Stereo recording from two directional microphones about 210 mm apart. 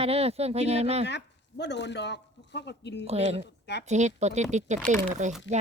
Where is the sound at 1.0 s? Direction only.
55° left (ahead or behind).